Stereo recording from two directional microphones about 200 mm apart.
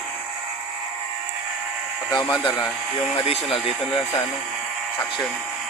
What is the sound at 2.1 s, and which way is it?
Speech, 20° left (ahead or behind).